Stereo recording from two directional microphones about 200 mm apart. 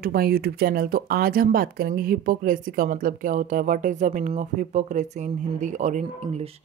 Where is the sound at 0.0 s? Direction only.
50° right (ahead or behind).